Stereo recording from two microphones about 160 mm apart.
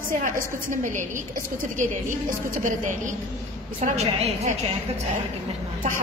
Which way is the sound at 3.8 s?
45° right (ahead or behind).